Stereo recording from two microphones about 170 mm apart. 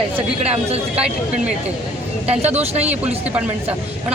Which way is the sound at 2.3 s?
40° right (ahead or behind).